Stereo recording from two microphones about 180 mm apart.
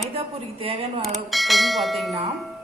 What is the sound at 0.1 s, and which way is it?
Speech, 30° right (ahead or behind).